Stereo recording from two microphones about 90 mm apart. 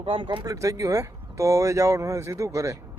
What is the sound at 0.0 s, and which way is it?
Speech, 70° right (ahead or behind).